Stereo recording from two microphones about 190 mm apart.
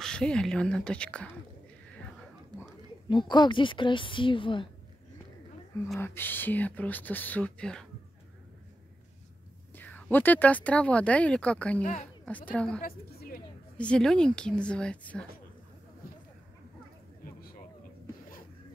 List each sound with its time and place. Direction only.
0.0 s a woman's voice: 5° left (ahead or behind)
3.1 s a woman's voice: 25° left (ahead or behind)
5.9 s speech: 10° left (ahead or behind)
9.8 s speech: 10° left (ahead or behind)
11.8 s speech: 35° left (ahead or behind)
12.3 s speech: 10° left (ahead or behind)
12.8 s a sound: 50° left (ahead or behind)
13.7 s a woman's voice: 5° left (ahead or behind)